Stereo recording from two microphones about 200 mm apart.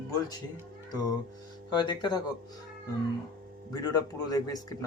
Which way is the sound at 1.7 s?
20° left (ahead or behind).